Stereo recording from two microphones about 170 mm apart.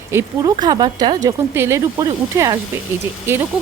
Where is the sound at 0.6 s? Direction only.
25° right (ahead or behind).